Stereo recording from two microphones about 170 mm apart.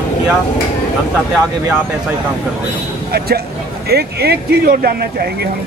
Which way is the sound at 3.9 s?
70° right (ahead or behind).